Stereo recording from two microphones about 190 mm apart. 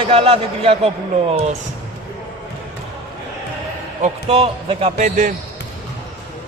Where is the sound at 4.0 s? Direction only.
30° right (ahead or behind).